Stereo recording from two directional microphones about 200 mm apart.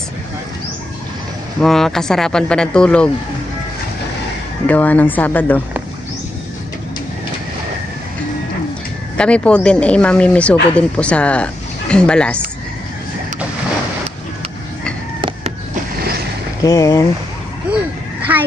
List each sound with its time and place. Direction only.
1.6 s speech: centre (ahead or behind)
4.6 s speech: 10° left (ahead or behind)
9.1 s speech: 5° left (ahead or behind)
16.6 s speech: 15° left (ahead or behind)
18.3 s a sound: 10° right (ahead or behind)